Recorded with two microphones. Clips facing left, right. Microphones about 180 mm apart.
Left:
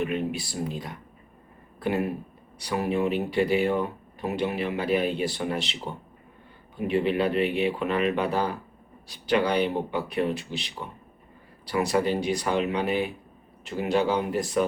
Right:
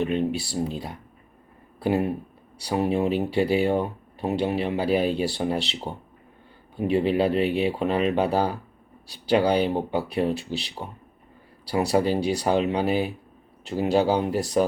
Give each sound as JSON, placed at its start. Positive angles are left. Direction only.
{"t": 0.0, "sound": "speech", "side_deg": -30}
{"t": 2.6, "sound": "speech", "side_deg": -30}